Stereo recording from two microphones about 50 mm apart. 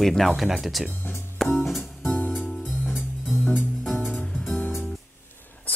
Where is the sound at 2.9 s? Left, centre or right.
Left.